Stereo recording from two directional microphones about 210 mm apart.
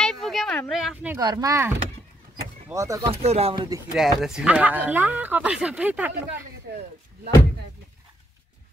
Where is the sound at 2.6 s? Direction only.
15° right (ahead or behind).